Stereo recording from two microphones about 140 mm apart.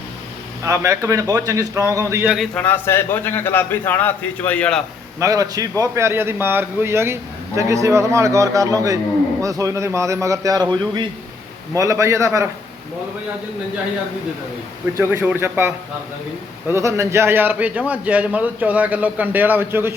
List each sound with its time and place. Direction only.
0.6 s a man's voice: 20° right (ahead or behind)
2.2 s a man's voice: 5° right (ahead or behind)
2.6 s a man's voice: 15° left (ahead or behind)
5.2 s a man's voice: 25° right (ahead or behind)
14.9 s a man's voice: 15° right (ahead or behind)